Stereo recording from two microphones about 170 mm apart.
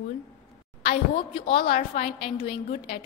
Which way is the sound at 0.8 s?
35° left (ahead or behind).